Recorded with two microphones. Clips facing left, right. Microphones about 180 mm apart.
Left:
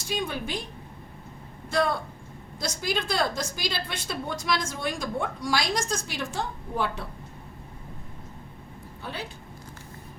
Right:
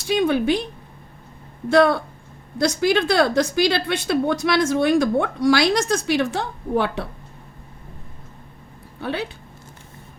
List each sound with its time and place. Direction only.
0.0 s a woman's voice: 70° right (ahead or behind)
1.7 s a woman's voice: 70° right (ahead or behind)
9.0 s speech: 70° right (ahead or behind)